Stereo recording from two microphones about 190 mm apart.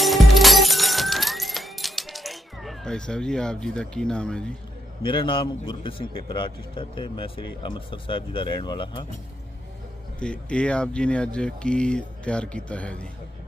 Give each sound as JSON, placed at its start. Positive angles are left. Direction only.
{"t": 0.0, "sound": "music", "side_deg": 0}
{"t": 5.0, "sound": "a man's voice", "side_deg": 25}
{"t": 10.2, "sound": "speech", "side_deg": 5}